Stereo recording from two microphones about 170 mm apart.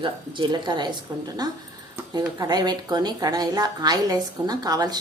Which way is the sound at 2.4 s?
25° right (ahead or behind).